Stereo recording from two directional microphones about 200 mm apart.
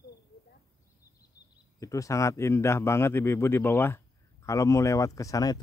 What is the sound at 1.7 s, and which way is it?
Speech, 15° left (ahead or behind).